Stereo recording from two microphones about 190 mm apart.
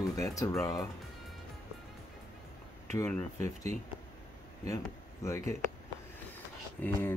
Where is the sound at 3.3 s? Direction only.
40° right (ahead or behind).